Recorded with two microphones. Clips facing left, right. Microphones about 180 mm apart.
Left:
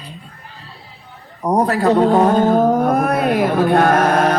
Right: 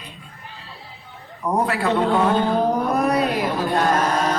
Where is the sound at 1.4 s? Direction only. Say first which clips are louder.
Left 6 dB; 40° left (ahead or behind).